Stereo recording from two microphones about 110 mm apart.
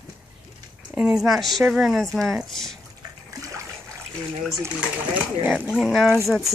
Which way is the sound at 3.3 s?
30° right (ahead or behind).